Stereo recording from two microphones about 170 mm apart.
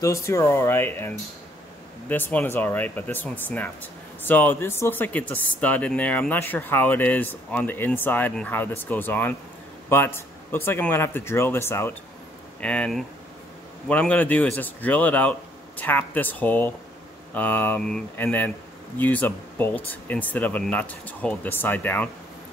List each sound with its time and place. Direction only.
0.0 s speech: 15° left (ahead or behind)